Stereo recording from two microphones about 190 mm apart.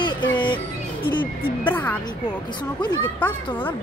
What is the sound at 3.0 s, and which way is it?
Speech, 10° left (ahead or behind).